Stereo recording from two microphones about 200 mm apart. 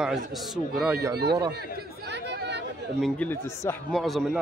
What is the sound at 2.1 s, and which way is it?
Chatter, 60° right (ahead or behind).